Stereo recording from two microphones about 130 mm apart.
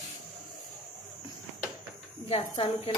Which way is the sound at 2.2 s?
50° left (ahead or behind).